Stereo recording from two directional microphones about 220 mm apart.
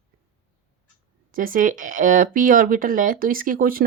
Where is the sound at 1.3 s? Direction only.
40° right (ahead or behind).